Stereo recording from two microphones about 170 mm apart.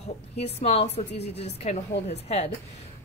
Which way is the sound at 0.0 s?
40° left (ahead or behind).